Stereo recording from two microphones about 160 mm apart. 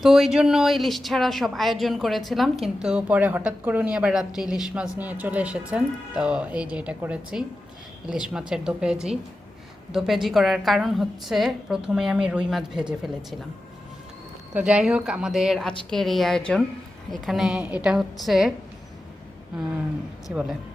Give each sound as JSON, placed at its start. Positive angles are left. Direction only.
{"t": 0.0, "sound": "a woman's voice", "side_deg": 0}
{"t": 14.5, "sound": "a woman's voice", "side_deg": -5}
{"t": 20.3, "sound": "a woman's voice", "side_deg": -5}